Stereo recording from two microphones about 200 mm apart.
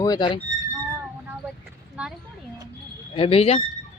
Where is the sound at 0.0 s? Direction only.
20° left (ahead or behind).